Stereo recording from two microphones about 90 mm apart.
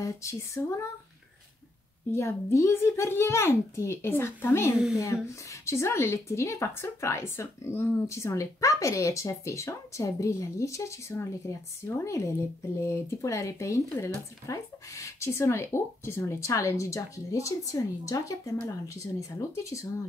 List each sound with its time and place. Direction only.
0.0 s speech: 35° left (ahead or behind)
2.1 s speech: 30° left (ahead or behind)